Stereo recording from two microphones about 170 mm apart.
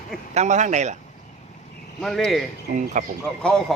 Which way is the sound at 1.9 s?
5° left (ahead or behind).